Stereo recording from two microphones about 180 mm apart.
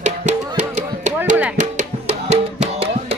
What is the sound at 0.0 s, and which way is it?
Music, 40° right (ahead or behind).